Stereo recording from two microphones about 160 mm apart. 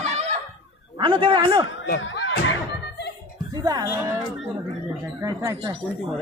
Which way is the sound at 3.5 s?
25° right (ahead or behind).